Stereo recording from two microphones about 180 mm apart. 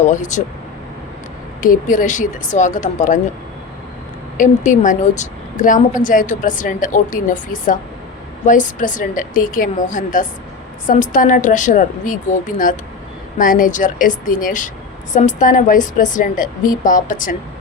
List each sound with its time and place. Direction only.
0.0 s a woman's voice: 45° left (ahead or behind)
1.6 s a woman's voice: 45° left (ahead or behind)
4.4 s a woman's voice: 45° left (ahead or behind)